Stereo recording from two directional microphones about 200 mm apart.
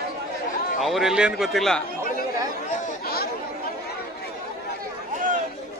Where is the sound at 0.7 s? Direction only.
Centre (ahead or behind).